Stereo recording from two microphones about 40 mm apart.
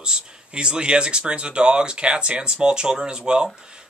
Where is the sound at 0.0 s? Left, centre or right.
Right.